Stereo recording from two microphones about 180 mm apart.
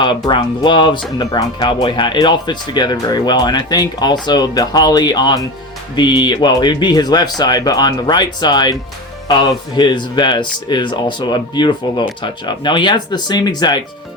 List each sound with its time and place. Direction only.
0.3 s speech: 25° left (ahead or behind)